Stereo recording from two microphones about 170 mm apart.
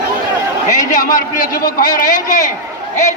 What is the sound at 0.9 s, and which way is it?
A man's voice, 50° left (ahead or behind).